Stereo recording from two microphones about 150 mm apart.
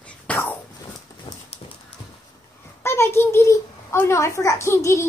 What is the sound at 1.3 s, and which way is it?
Clip-clop, 35° left (ahead or behind).